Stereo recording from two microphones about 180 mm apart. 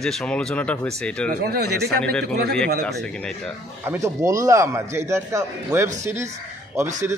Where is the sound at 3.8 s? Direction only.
15° right (ahead or behind).